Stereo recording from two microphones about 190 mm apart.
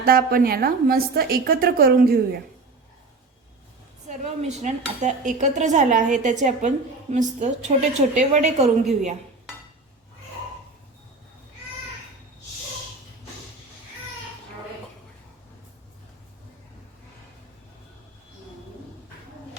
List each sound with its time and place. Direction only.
0.0 s a woman's voice: 50° right (ahead or behind)
4.1 s dishes: 35° right (ahead or behind)